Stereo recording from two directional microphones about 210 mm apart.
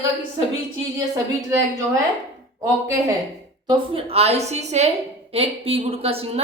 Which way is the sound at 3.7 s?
25° right (ahead or behind).